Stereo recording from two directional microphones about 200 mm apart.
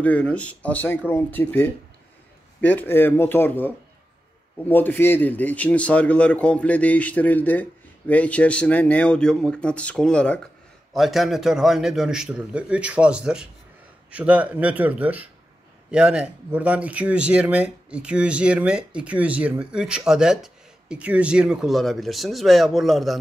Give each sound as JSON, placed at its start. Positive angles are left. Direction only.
{"t": 0.0, "sound": "speech", "side_deg": 5}